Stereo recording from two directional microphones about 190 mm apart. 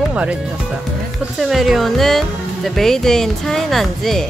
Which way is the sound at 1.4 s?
Centre (ahead or behind).